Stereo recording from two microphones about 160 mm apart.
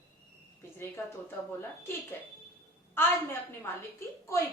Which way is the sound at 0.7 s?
15° left (ahead or behind).